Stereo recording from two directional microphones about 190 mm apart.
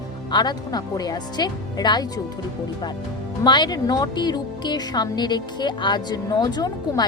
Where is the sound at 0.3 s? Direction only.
20° left (ahead or behind).